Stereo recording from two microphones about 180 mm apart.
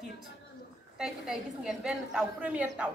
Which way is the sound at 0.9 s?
Centre (ahead or behind).